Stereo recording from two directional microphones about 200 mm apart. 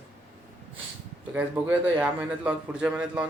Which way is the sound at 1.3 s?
10° right (ahead or behind).